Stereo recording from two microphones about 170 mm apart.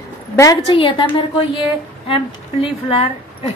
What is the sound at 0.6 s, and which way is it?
A woman's voice, 30° left (ahead or behind).